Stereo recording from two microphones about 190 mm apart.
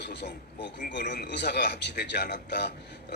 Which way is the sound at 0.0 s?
65° left (ahead or behind).